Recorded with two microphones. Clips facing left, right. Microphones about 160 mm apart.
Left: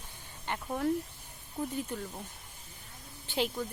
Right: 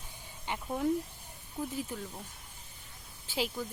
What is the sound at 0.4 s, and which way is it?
Speech, 10° right (ahead or behind).